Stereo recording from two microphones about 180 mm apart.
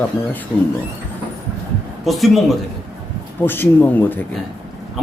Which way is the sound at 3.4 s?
10° left (ahead or behind).